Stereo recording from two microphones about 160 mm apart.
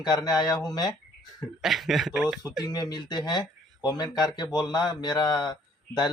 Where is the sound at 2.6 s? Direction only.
25° left (ahead or behind).